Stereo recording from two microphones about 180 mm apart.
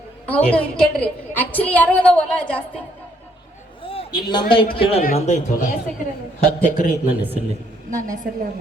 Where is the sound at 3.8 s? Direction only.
30° left (ahead or behind).